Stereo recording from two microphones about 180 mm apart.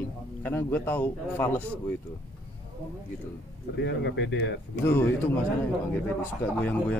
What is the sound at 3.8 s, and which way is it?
Speech, 75° left (ahead or behind).